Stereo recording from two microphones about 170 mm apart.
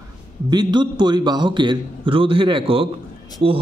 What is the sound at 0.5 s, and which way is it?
A man's voice, 25° right (ahead or behind).